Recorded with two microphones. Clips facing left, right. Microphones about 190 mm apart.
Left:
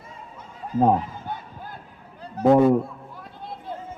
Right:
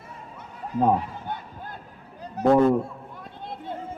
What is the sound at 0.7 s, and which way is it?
Speech, 70° right (ahead or behind).